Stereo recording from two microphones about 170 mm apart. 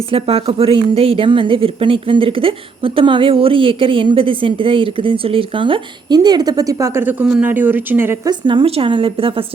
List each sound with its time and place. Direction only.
0.1 s a woman's voice: 35° right (ahead or behind); by 8.1 s 10° right (ahead or behind)
8.3 s a woman's voice: 30° right (ahead or behind)